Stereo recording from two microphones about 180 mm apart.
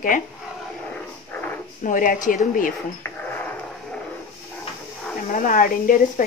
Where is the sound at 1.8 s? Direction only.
50° left (ahead or behind).